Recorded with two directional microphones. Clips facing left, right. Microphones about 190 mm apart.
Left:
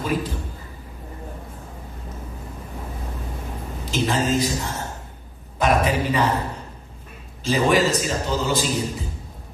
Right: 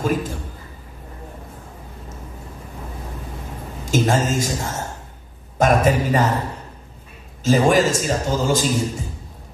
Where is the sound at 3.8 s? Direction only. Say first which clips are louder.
Right 4 dB; 45° right (ahead or behind).